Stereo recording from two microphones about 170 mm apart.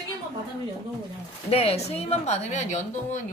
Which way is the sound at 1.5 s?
35° left (ahead or behind).